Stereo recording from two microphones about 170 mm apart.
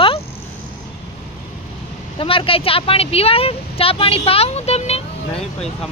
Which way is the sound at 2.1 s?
30° left (ahead or behind).